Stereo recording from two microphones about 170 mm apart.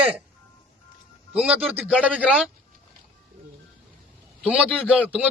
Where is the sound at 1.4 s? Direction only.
5° right (ahead or behind).